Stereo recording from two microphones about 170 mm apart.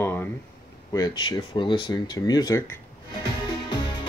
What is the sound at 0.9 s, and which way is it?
Speech, 25° left (ahead or behind).